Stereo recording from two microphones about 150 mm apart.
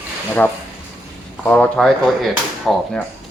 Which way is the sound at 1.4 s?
10° left (ahead or behind).